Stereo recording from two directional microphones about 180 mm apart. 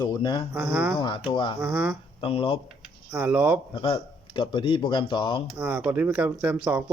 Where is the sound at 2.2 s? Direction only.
30° left (ahead or behind).